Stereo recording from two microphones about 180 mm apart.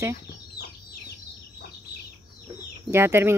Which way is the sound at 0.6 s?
65° left (ahead or behind).